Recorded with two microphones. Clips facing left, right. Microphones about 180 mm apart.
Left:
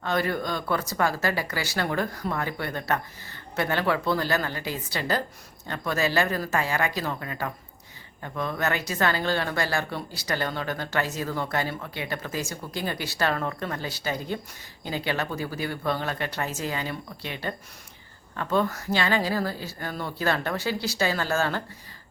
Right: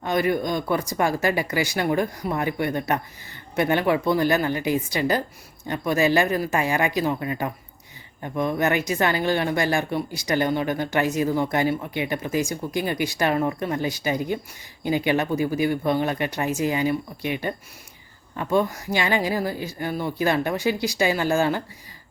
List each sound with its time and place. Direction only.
0.0 s a woman's voice: 15° right (ahead or behind)